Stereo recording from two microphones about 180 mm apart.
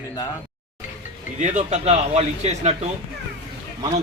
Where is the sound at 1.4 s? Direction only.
40° right (ahead or behind).